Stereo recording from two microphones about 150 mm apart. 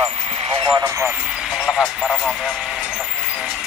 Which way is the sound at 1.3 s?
5° right (ahead or behind).